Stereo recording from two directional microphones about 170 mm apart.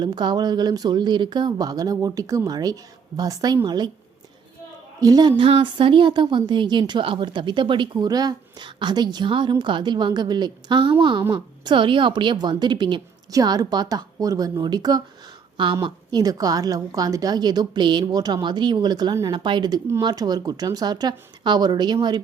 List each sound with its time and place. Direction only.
0.0 s a woman's voice: 25° right (ahead or behind)
4.9 s a woman's voice: 25° right (ahead or behind)